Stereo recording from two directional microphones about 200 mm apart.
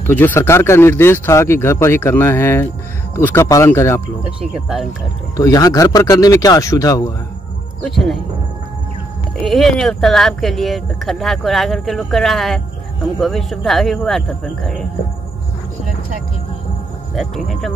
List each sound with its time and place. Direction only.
0.0 s speech: 10° left (ahead or behind)
5.3 s speech: 20° left (ahead or behind)
7.8 s speech: centre (ahead or behind)
9.4 s speech: 5° left (ahead or behind)
17.1 s speech: centre (ahead or behind)